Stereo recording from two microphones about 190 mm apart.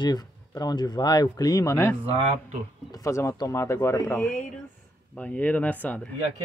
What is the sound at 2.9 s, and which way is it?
Speech, 15° left (ahead or behind).